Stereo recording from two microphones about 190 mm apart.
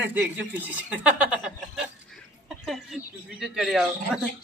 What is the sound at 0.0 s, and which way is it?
Speech, 10° right (ahead or behind).